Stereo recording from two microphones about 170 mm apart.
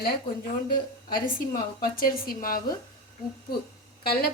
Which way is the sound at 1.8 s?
55° left (ahead or behind).